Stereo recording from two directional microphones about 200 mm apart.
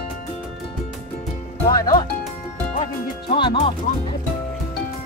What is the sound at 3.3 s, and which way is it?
Music, 25° left (ahead or behind).